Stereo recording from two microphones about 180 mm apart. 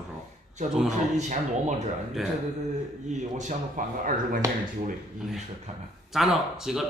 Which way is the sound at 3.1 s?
45° right (ahead or behind).